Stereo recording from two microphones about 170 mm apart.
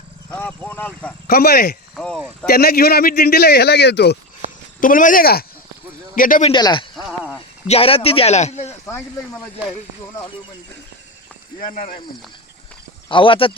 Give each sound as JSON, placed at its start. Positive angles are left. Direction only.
{"t": 0.3, "sound": "speech", "side_deg": 10}
{"t": 1.3, "sound": "speech", "side_deg": 65}
{"t": 2.0, "sound": "speech", "side_deg": 5}
{"t": 2.5, "sound": "a man's voice", "side_deg": 65}
{"t": 4.8, "sound": "speech", "side_deg": 50}
{"t": 6.5, "sound": "speech", "side_deg": 25}
{"t": 6.9, "sound": "a sound", "side_deg": -5}
{"t": 7.7, "sound": "a man's voice", "side_deg": 35}
{"t": 11.6, "sound": "speech", "side_deg": 50}
{"t": 13.1, "sound": "a man's voice", "side_deg": 30}